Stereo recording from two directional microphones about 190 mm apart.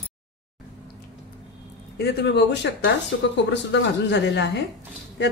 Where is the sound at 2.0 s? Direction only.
60° left (ahead or behind).